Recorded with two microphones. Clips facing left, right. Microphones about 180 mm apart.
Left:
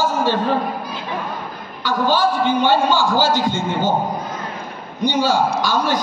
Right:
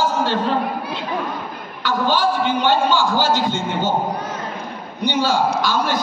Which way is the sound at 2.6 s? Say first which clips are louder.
Left 1 dB; 10° left (ahead or behind).